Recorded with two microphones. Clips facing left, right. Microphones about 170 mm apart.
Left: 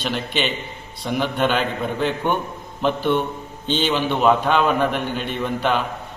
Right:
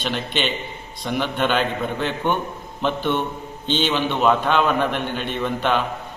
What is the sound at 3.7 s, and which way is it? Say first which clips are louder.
A man's voice: left 1 dB; 10° left (ahead or behind).